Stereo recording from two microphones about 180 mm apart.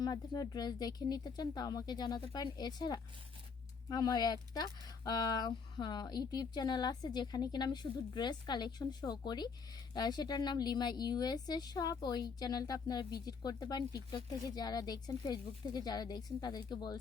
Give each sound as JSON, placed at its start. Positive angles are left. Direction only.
{"t": 0.0, "sound": "speech", "side_deg": 20}